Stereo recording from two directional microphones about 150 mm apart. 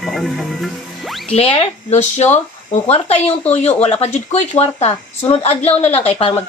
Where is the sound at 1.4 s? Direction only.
40° left (ahead or behind).